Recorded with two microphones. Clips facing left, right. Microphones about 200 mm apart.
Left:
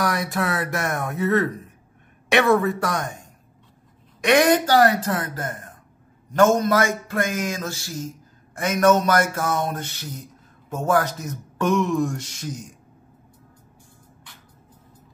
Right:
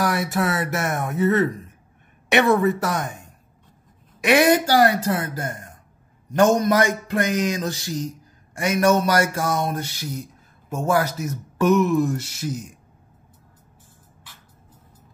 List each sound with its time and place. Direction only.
0.0 s a man's voice: 5° right (ahead or behind)